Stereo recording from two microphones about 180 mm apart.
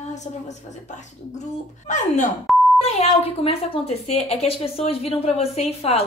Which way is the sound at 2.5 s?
Centre (ahead or behind).